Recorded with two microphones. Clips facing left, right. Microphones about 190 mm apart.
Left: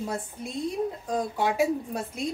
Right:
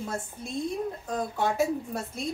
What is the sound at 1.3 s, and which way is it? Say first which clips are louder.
Speech: left 1 dB; 15° left (ahead or behind).